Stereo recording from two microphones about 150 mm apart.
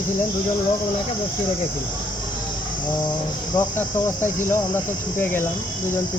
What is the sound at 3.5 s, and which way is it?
Cricket, 15° left (ahead or behind).